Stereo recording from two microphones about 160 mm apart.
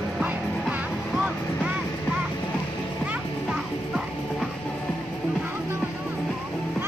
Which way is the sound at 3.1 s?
Centre (ahead or behind).